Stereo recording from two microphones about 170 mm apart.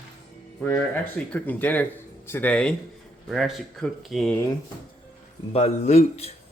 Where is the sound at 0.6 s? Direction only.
10° left (ahead or behind).